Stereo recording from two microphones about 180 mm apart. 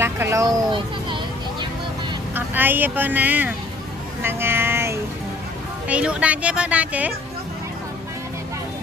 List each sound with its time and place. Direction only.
0.0 s speech: 15° right (ahead or behind)
2.3 s speech: 10° right (ahead or behind)